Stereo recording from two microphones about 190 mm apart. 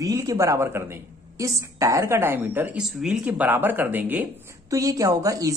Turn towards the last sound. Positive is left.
turn(degrees=-20)  # may be behind; listen again after turning